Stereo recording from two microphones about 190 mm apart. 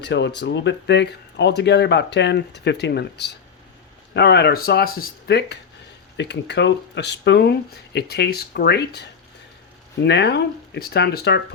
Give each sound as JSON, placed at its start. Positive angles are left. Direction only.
{"t": 0.0, "sound": "speech", "side_deg": 65}